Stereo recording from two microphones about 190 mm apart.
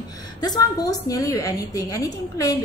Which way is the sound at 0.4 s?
20° left (ahead or behind).